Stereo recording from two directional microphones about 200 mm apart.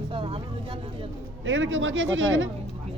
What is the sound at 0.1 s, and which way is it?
Vehicle, 25° right (ahead or behind).